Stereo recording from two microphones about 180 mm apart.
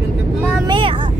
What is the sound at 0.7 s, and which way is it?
Vehicle, 30° right (ahead or behind).